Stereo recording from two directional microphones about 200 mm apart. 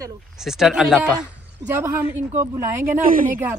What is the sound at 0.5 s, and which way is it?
Speech, centre (ahead or behind).